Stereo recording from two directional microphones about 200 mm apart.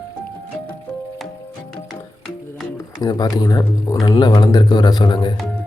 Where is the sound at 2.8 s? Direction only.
20° left (ahead or behind).